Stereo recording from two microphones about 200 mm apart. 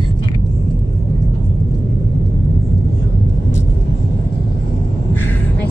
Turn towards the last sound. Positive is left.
turn(degrees=10)  # may be behind; listen again after turning